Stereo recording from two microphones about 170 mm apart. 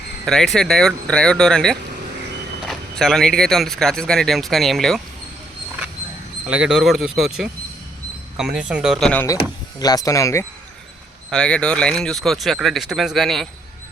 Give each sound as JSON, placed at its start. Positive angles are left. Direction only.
{"t": 0.3, "sound": "speech", "side_deg": 5}
{"t": 6.5, "sound": "speech", "side_deg": -5}
{"t": 9.2, "sound": "speech", "side_deg": 20}
{"t": 11.3, "sound": "speech", "side_deg": 5}